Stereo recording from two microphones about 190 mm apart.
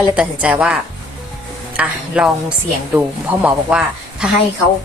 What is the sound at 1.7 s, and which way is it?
A woman's voice, 5° right (ahead or behind).